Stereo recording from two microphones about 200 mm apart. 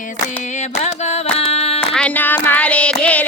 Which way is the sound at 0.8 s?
35° left (ahead or behind).